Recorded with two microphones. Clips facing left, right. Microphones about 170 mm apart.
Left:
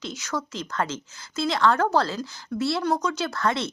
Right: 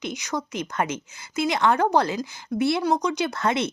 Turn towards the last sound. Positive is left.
turn(degrees=-20)  # may be behind; listen again after turning